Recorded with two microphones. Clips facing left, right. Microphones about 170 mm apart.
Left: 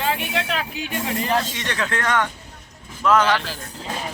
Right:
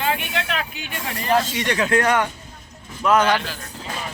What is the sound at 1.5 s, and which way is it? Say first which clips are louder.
Speech: right 6 dB; 15° right (ahead or behind).